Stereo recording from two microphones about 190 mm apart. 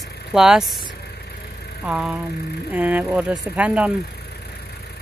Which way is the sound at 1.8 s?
5° right (ahead or behind).